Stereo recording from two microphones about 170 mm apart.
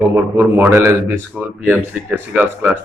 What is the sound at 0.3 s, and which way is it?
Speech, 10° right (ahead or behind).